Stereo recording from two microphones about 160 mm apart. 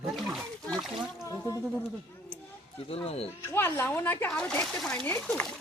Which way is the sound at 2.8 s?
40° left (ahead or behind).